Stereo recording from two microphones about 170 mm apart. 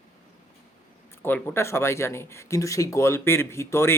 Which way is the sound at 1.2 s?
15° left (ahead or behind).